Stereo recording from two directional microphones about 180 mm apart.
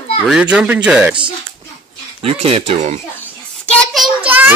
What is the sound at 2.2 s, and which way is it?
Speech, 35° right (ahead or behind).